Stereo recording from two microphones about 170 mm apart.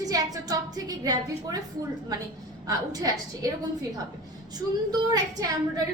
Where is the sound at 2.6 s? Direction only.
20° right (ahead or behind).